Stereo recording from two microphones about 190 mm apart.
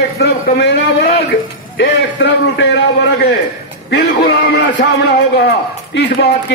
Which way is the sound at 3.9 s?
60° left (ahead or behind).